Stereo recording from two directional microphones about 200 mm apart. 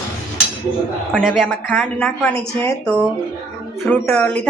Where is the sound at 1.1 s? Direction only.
Centre (ahead or behind).